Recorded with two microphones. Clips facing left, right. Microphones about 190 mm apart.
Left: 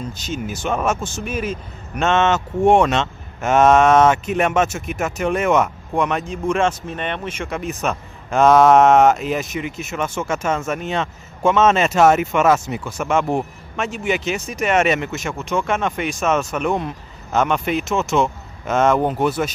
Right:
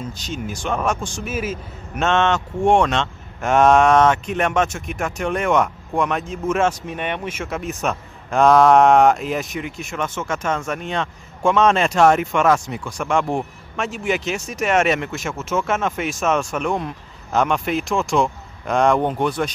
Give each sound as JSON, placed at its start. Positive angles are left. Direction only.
{"t": 0.2, "sound": "a man's voice", "side_deg": 5}